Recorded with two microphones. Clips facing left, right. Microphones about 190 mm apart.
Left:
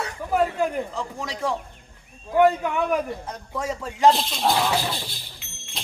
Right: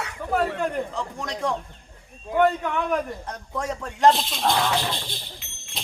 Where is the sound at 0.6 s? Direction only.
5° left (ahead or behind).